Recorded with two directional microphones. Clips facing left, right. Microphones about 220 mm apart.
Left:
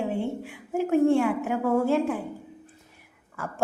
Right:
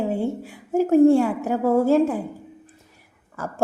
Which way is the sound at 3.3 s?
40° right (ahead or behind).